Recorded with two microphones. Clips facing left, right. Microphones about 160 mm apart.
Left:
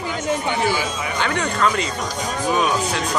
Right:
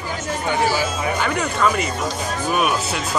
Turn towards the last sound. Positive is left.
turn(degrees=-10)  # may be behind; listen again after turning